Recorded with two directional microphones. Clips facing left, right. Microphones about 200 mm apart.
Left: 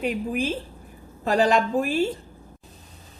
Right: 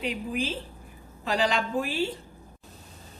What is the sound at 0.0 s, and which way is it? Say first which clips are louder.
A woman's voice: left 5 dB; 50° left (ahead or behind).